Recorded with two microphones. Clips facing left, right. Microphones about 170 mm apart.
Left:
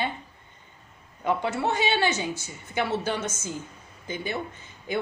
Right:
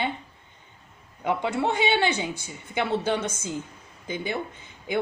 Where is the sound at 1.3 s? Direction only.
15° right (ahead or behind).